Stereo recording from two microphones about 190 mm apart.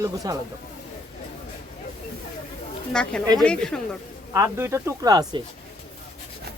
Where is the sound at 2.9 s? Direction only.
5° left (ahead or behind).